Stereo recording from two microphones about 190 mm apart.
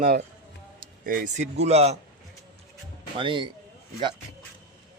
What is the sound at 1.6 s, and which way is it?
Speech, 35° right (ahead or behind).